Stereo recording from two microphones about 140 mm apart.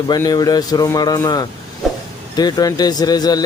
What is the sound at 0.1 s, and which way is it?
Speech, 30° left (ahead or behind).